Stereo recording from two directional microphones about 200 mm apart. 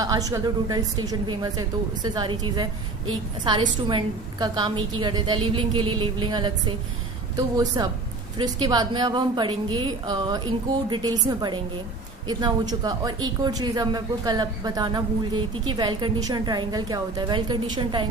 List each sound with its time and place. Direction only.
0.0 s a woman's voice: 15° right (ahead or behind)